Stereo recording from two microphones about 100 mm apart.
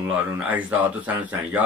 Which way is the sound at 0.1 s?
15° right (ahead or behind).